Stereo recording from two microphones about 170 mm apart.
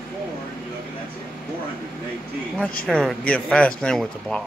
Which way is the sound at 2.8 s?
5° left (ahead or behind).